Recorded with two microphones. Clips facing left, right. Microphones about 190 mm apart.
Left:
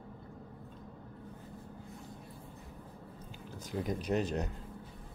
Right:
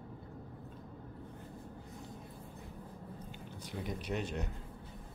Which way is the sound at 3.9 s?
40° left (ahead or behind).